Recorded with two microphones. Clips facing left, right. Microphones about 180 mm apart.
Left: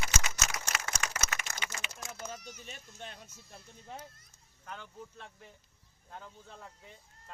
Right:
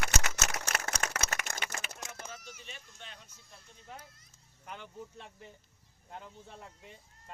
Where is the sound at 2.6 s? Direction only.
45° left (ahead or behind).